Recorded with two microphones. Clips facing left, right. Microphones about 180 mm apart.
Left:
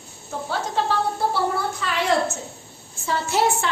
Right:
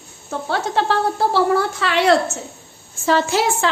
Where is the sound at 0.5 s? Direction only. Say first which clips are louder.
Right 4 dB; 85° right.